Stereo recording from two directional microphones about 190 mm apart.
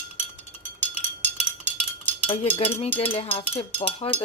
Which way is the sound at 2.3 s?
30° left (ahead or behind).